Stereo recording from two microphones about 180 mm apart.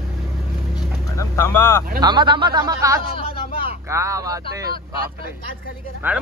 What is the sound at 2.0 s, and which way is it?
A man's voice, 25° right (ahead or behind).